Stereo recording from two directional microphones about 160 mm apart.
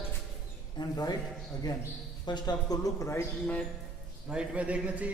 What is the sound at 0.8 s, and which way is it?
Speech, 25° left (ahead or behind).